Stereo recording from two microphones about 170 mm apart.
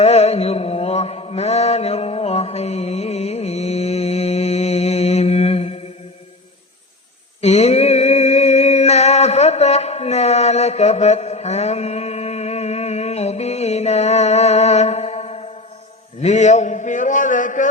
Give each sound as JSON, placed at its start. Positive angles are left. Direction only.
{"t": 0.0, "sound": "mantra", "side_deg": 40}
{"t": 7.4, "sound": "music", "side_deg": 40}
{"t": 16.2, "sound": "a sound", "side_deg": 45}